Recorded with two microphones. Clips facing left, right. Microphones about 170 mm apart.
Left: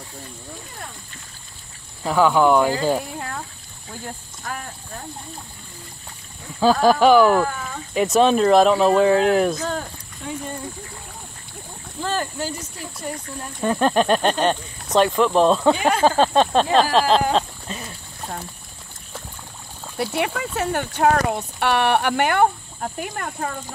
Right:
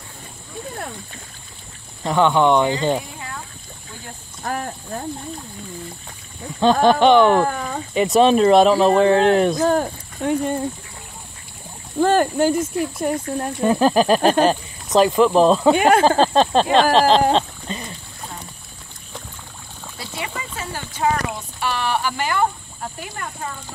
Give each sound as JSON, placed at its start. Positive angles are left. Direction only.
{"t": 2.0, "sound": "speech", "side_deg": 5}
{"t": 4.4, "sound": "speech", "side_deg": -45}
{"t": 6.6, "sound": "speech", "side_deg": 5}
{"t": 7.4, "sound": "speech", "side_deg": -50}
{"t": 7.9, "sound": "speech", "side_deg": 0}
{"t": 9.6, "sound": "speech", "side_deg": -50}
{"t": 12.0, "sound": "speech", "side_deg": -55}
{"t": 13.6, "sound": "speech", "side_deg": -5}
{"t": 17.3, "sound": "a sound", "side_deg": 5}
{"t": 20.0, "sound": "speech", "side_deg": 65}